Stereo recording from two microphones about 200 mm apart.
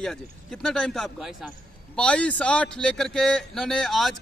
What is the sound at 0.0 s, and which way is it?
A man's voice, 5° left (ahead or behind).